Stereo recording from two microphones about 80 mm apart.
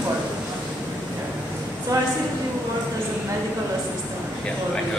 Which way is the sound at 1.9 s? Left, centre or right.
Right.